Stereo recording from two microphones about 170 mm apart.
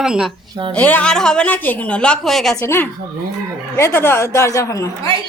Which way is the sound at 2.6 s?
15° left (ahead or behind).